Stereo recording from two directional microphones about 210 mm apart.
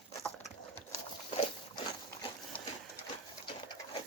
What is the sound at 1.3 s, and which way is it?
Dog, 25° left (ahead or behind).